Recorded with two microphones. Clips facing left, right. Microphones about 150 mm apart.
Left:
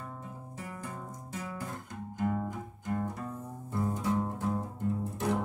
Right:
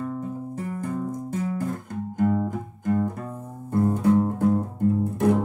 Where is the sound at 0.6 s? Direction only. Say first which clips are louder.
Right 11 dB; 45° right (ahead or behind).